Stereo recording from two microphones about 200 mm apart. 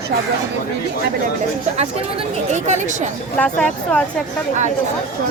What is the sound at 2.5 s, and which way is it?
Speech, 35° right (ahead or behind).